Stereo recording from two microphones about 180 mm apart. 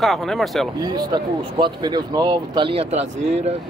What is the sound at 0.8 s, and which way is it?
Speech, 20° right (ahead or behind).